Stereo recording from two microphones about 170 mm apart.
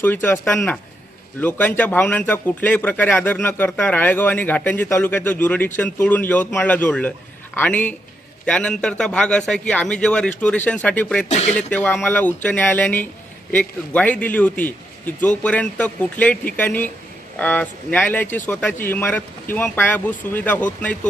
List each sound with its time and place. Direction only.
0.0 s a man's voice: 10° left (ahead or behind)
11.3 s speech: 40° left (ahead or behind)
11.5 s speech: 10° left (ahead or behind)